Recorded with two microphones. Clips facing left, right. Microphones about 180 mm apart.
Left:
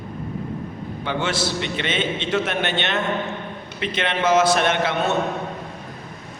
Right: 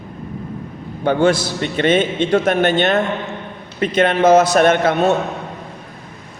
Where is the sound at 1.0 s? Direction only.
45° right (ahead or behind).